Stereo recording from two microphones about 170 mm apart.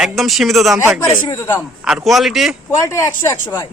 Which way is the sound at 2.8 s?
20° left (ahead or behind).